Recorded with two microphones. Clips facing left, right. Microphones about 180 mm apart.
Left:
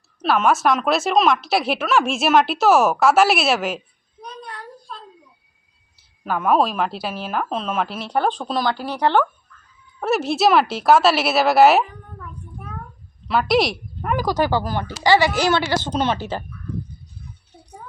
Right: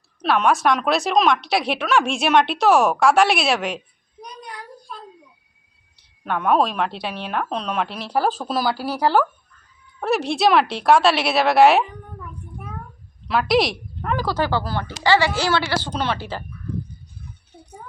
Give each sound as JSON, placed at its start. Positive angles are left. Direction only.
{"t": 0.2, "sound": "speech", "side_deg": 0}
{"t": 4.3, "sound": "a sound", "side_deg": -10}
{"t": 6.0, "sound": "speech", "side_deg": 5}
{"t": 13.2, "sound": "speech", "side_deg": 0}
{"t": 14.0, "sound": "speech", "side_deg": 15}